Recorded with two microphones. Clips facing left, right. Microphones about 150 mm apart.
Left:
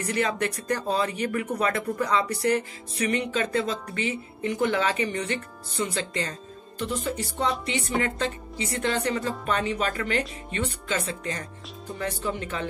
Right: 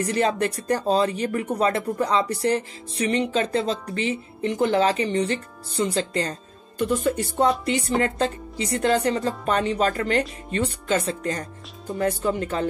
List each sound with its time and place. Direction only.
0.0 s speech: 35° right (ahead or behind)
6.8 s speech: 55° right (ahead or behind)
7.6 s speech: 35° right (ahead or behind)